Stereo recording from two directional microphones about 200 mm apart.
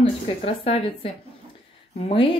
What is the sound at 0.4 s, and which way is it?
Speech, 30° left (ahead or behind).